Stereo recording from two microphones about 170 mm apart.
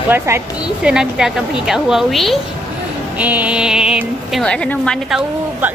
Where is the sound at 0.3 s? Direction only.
15° right (ahead or behind).